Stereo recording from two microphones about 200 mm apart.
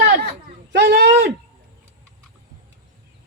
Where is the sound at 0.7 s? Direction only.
55° right (ahead or behind).